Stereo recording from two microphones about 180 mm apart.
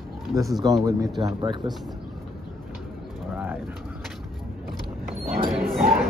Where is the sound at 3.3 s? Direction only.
10° right (ahead or behind).